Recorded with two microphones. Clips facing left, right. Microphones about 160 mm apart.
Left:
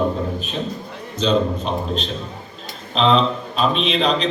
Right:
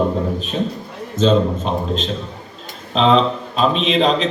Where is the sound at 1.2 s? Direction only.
45° right (ahead or behind).